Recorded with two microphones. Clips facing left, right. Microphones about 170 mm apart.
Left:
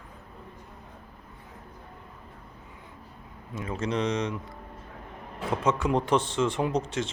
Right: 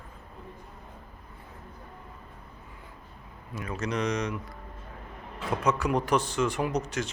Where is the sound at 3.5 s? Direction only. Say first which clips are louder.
Left 2 dB; 25° left (ahead or behind).